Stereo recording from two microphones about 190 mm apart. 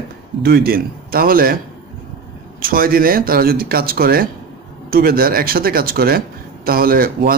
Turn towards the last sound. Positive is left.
turn(degrees=-50)  # may be behind; listen again after turning